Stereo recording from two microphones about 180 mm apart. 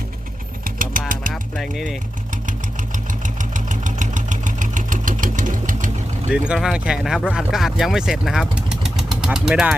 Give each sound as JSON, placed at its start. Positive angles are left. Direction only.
{"t": 0.6, "sound": "vehicle", "side_deg": -50}
{"t": 1.3, "sound": "music", "side_deg": 0}
{"t": 2.3, "sound": "engine", "side_deg": -45}
{"t": 6.3, "sound": "speech", "side_deg": -5}